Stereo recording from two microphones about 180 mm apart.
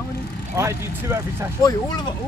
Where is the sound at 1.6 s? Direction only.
20° left (ahead or behind).